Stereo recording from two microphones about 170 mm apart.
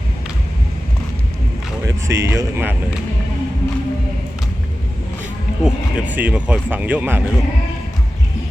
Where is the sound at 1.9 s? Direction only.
15° right (ahead or behind).